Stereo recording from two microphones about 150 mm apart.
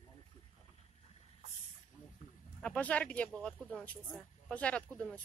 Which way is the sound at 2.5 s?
10° left (ahead or behind).